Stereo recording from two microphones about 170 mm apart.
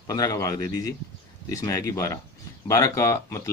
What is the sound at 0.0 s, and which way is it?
A man's voice, 20° left (ahead or behind).